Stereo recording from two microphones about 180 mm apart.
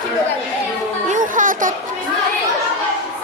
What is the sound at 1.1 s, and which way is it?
Speech, 45° right (ahead or behind).